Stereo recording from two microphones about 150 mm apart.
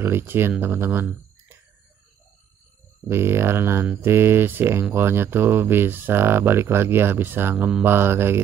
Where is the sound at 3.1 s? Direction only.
15° right (ahead or behind).